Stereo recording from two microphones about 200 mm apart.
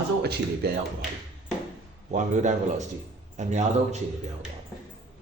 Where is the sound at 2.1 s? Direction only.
35° right (ahead or behind).